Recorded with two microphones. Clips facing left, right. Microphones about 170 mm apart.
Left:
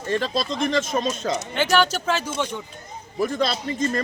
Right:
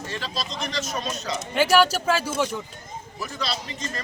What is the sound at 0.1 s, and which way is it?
Speech, 50° left (ahead or behind).